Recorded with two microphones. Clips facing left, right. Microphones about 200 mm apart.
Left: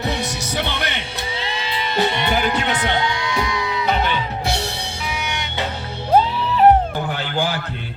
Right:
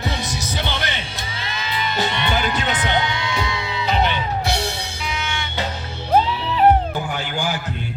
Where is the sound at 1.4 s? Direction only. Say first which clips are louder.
Right 1 dB; 30° left (ahead or behind).